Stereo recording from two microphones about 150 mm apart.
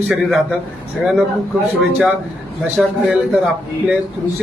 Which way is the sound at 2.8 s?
5° right (ahead or behind).